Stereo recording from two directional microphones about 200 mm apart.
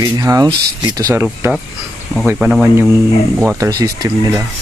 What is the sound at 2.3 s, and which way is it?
Speech, 5° right (ahead or behind).